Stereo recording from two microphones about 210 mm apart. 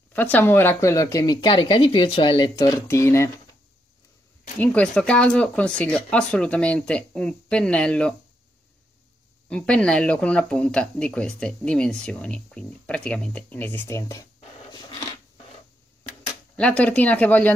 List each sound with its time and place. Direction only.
0.1 s speech: 10° left (ahead or behind)
4.6 s speech: 5° left (ahead or behind)
9.5 s speech: 5° left (ahead or behind)
16.5 s speech: 5° left (ahead or behind)